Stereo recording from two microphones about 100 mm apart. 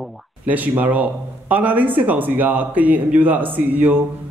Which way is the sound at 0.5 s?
15° right (ahead or behind).